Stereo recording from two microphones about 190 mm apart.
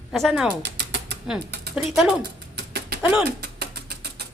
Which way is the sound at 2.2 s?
55° right (ahead or behind).